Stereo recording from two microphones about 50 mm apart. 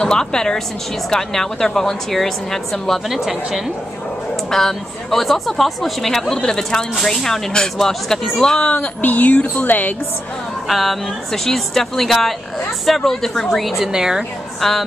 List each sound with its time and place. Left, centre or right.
0.0 s speech: centre
3.2 s a woman's voice: centre
4.5 s speech: centre
8.6 s speech: left
10.7 s speech: centre
13.9 s a woman's voice: centre